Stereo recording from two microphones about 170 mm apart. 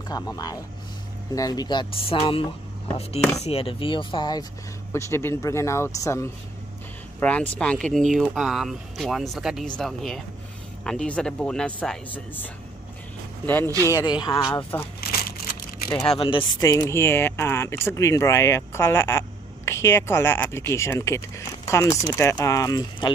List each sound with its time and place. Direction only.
0.1 s speech: 20° left (ahead or behind); by 12.4 s 5° left (ahead or behind)
13.8 s speech: 20° left (ahead or behind)
15.0 s a sound: 65° left (ahead or behind)
16.2 s speech: 30° left (ahead or behind)